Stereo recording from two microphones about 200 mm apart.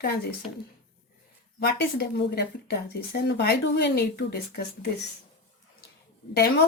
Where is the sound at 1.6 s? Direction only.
55° left (ahead or behind).